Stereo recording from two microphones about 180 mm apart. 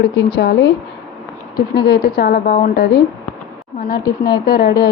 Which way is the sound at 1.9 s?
55° left (ahead or behind).